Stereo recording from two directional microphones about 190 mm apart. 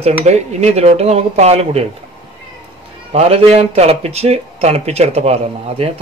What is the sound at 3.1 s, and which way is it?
Speech, 35° right (ahead or behind).